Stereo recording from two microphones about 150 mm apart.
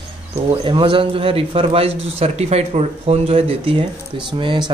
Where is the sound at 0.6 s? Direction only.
35° right (ahead or behind).